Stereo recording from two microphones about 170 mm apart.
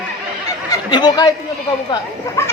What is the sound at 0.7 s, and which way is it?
Speech, 25° left (ahead or behind).